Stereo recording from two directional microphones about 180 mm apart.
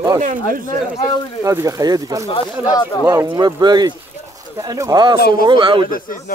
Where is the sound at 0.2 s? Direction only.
45° right (ahead or behind).